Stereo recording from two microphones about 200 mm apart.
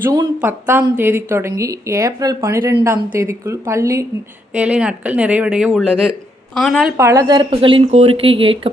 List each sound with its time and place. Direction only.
0.0 s a woman's voice: 15° right (ahead or behind); by 6.9 s centre (ahead or behind)
6.9 s speech: 15° right (ahead or behind)